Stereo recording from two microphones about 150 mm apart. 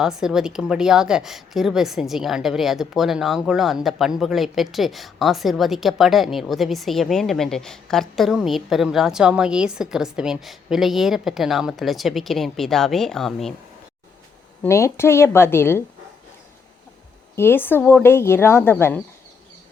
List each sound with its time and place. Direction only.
0.0 s a woman's voice: 5° right (ahead or behind)
14.6 s speech: 20° left (ahead or behind)
17.3 s speech: 15° left (ahead or behind)